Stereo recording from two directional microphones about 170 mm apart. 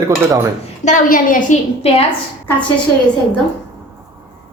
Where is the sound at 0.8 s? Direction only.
50° left (ahead or behind).